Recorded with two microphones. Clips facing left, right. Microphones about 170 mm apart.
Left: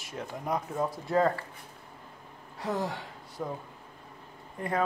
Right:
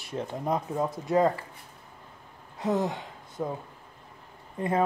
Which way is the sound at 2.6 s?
20° right (ahead or behind).